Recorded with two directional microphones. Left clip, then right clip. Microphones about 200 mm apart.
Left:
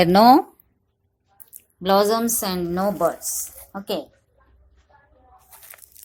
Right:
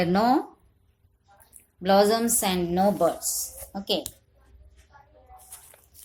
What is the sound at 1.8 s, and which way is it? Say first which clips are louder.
Speech: left 2 dB; 30° left (ahead or behind).